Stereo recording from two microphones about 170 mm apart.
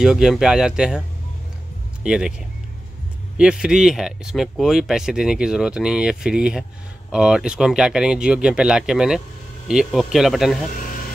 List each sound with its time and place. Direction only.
0.0 s speech: 5° right (ahead or behind)
2.0 s speech: 5° right (ahead or behind)
3.3 s speech: 5° right (ahead or behind)